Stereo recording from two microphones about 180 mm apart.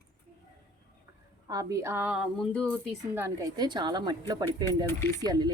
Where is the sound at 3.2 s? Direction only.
15° right (ahead or behind).